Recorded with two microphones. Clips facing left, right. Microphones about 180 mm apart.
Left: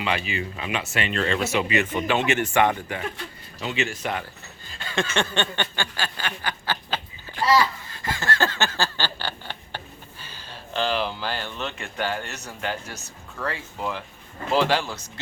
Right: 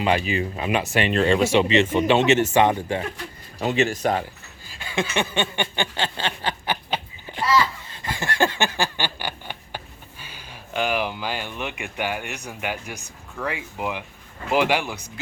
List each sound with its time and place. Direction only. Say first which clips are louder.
0.0 s speech: right 5 dB; 40° right (ahead or behind); by 3.0 s 20° right (ahead or behind)
3.6 s speech: right 6 dB; 40° right (ahead or behind)
4.6 s a sound: right 1 dB; 5° right (ahead or behind)
14.5 s speech: right 1 dB; 15° right (ahead or behind)